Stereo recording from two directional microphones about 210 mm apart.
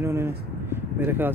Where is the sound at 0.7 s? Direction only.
10° right (ahead or behind).